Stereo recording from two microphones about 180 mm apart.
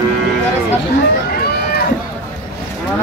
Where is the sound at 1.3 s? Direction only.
60° left (ahead or behind).